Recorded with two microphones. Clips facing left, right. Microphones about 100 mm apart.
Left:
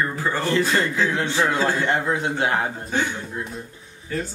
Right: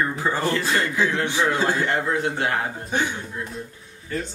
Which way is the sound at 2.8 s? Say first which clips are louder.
Even; 15° right (ahead or behind).